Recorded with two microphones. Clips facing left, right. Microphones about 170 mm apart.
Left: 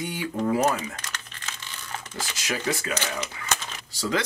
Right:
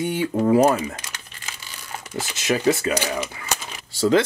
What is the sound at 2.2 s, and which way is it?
Speech, 25° right (ahead or behind).